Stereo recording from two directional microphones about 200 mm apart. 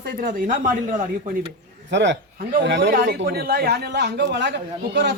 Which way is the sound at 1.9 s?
60° right (ahead or behind).